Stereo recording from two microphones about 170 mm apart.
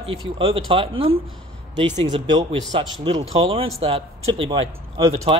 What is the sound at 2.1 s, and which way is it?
Speech, 30° right (ahead or behind).